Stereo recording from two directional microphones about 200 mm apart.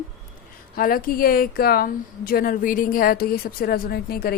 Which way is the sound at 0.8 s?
45° left (ahead or behind).